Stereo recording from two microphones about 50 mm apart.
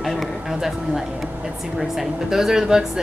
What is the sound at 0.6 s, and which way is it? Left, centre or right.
A woman's voice, centre.